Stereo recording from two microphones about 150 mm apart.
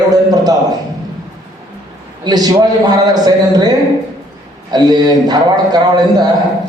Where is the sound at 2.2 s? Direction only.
25° right (ahead or behind).